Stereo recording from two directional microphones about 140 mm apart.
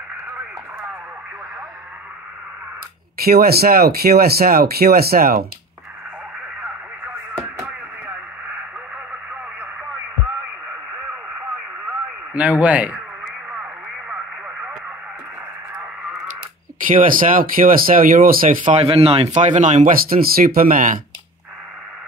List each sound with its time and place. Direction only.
3.2 s speech: 90° right
12.4 s speech: 10° right (ahead or behind)
15.8 s a sound: 5° right (ahead or behind)
16.8 s speech: 75° right (ahead or behind)
18.8 s speech: 45° right (ahead or behind); by 21.0 s 80° right